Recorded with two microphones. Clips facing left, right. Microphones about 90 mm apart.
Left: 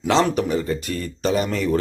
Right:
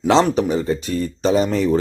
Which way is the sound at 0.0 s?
25° right (ahead or behind).